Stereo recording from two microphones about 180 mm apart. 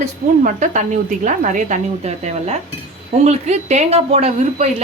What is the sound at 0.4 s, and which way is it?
A woman's voice, 45° right (ahead or behind).